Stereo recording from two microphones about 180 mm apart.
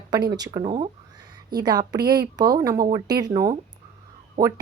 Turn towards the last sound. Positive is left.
turn(degrees=-50)  # may be behind; listen again after turning